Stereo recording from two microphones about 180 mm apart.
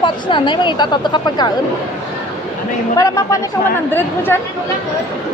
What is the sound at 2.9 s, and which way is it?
Speech, 15° left (ahead or behind).